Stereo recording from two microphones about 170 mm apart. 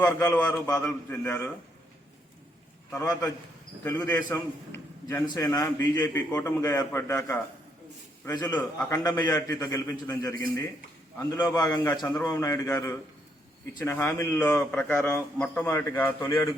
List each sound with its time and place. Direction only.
0.0 s a man's voice: 10° left (ahead or behind)
2.9 s a man's voice: 20° left (ahead or behind)
8.2 s a man's voice: 25° left (ahead or behind)
8.5 s a man's voice: 10° left (ahead or behind)
9.2 s a man's voice: 20° left (ahead or behind)